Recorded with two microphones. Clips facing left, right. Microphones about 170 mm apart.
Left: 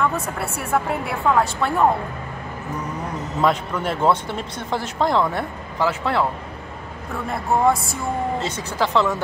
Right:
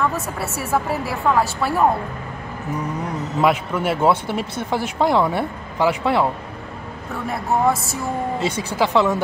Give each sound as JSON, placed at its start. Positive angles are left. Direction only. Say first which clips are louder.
{"t": 0.0, "sound": "a woman's voice", "louder": "even", "side_deg": -5}
{"t": 3.3, "sound": "speech", "louder": "right 2 dB", "side_deg": -10}
{"t": 7.2, "sound": "speech", "louder": "even", "side_deg": -5}